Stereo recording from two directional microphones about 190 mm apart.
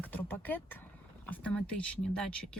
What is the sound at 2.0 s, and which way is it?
Speech, 5° left (ahead or behind).